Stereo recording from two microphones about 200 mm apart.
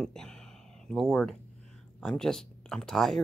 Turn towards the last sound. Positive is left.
turn(degrees=0)  # may be behind; listen again after turning